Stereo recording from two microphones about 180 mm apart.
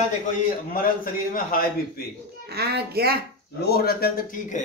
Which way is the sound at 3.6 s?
60° left (ahead or behind).